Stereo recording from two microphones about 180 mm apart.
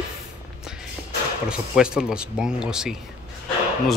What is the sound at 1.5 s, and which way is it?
A man's voice, 5° right (ahead or behind).